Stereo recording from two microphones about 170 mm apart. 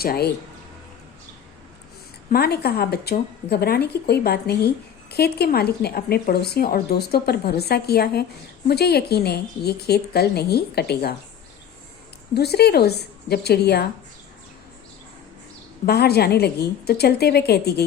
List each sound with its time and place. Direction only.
0.0 s speech: 65° left (ahead or behind)
2.3 s speech: 70° left (ahead or behind)
12.3 s speech: 70° left (ahead or behind)
15.9 s speech: 70° left (ahead or behind)